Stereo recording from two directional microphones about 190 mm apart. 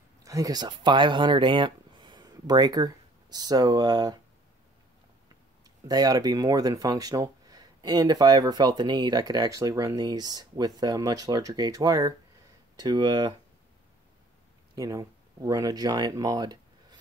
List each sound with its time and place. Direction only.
0.2 s speech: 20° right (ahead or behind)
5.9 s speech: 20° right (ahead or behind)
14.8 s speech: 20° right (ahead or behind)